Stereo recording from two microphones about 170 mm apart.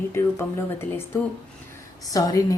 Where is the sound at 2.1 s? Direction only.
20° left (ahead or behind).